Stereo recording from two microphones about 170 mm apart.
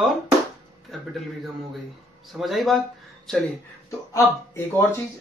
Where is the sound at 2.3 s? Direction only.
Centre (ahead or behind).